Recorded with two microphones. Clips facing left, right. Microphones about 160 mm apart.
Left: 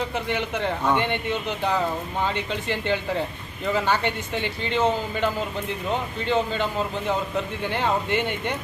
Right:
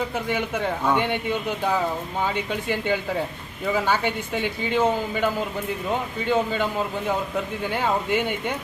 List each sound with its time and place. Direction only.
0.3 s a man's voice: 10° right (ahead or behind)